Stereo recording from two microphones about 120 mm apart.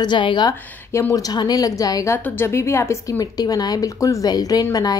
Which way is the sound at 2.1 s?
15° left (ahead or behind).